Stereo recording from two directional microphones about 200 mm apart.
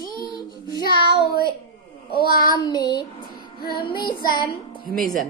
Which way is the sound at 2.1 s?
50° left (ahead or behind).